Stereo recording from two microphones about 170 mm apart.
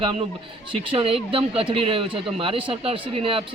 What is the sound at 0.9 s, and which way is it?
Speech, 35° right (ahead or behind).